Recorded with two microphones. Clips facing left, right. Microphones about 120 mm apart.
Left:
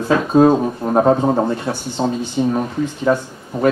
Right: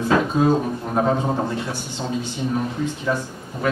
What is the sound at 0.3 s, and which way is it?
Speech, 45° left (ahead or behind).